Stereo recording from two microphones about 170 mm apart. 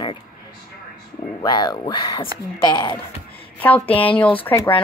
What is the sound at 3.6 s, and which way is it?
Speech, 10° left (ahead or behind).